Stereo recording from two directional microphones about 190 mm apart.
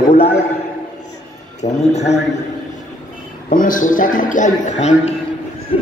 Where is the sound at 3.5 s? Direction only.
45° left (ahead or behind).